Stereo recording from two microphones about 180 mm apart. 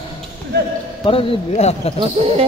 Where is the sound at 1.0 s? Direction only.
30° left (ahead or behind).